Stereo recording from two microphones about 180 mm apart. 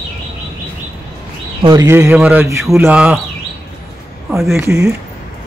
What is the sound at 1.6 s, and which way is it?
Speech, 25° right (ahead or behind).